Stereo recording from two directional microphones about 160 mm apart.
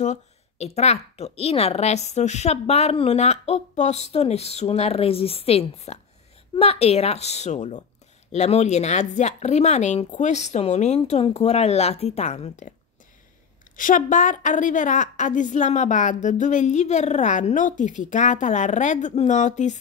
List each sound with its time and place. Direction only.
0.0 s a woman's voice: 45° left (ahead or behind)
13.7 s a woman's voice: 55° left (ahead or behind)